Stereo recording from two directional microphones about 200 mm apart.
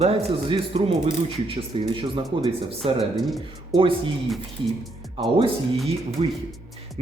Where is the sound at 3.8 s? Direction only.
25° right (ahead or behind).